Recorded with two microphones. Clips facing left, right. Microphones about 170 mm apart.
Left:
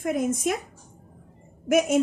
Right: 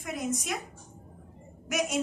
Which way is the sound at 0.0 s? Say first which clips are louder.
Left 8 dB; 50° left (ahead or behind).